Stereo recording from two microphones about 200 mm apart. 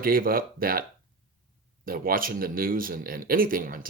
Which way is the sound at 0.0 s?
45° right (ahead or behind).